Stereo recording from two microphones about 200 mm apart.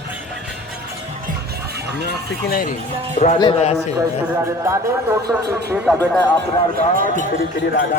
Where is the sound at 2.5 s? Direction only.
45° left (ahead or behind).